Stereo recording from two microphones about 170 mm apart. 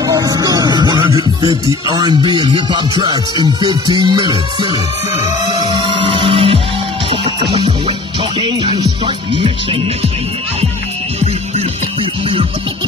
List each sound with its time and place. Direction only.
0.0 s speech: 20° right (ahead or behind)
5.2 s music: 25° right (ahead or behind)
7.1 s speech: 35° right (ahead or behind)